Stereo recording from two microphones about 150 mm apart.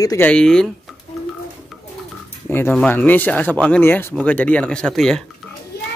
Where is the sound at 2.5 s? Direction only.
10° left (ahead or behind).